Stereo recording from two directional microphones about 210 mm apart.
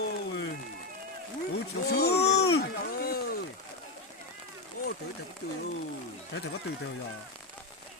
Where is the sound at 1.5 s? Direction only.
50° left (ahead or behind).